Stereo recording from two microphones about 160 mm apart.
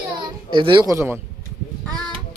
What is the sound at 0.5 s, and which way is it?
Speech, 30° right (ahead or behind).